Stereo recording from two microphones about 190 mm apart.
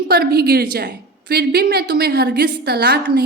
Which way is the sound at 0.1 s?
55° right (ahead or behind).